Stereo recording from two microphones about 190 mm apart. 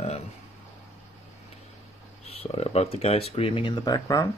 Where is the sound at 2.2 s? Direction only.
35° left (ahead or behind).